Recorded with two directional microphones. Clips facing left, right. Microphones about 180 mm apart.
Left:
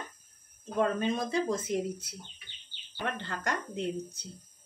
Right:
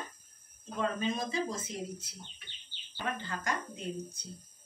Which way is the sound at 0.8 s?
60° left (ahead or behind).